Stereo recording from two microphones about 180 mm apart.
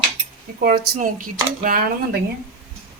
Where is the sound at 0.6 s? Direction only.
50° right (ahead or behind).